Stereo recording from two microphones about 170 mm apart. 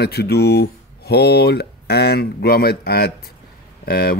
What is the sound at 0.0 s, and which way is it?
Speech, 70° left (ahead or behind).